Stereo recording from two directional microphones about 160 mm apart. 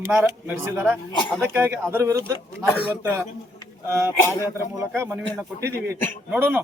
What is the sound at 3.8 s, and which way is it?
A man's voice, 15° right (ahead or behind).